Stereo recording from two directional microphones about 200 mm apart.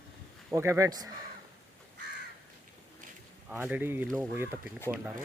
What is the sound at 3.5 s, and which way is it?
Speech, 10° right (ahead or behind).